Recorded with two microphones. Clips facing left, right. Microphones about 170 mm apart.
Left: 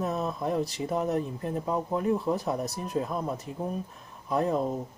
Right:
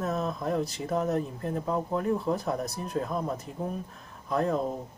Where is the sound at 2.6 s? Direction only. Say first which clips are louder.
Left 1 dB; centre (ahead or behind).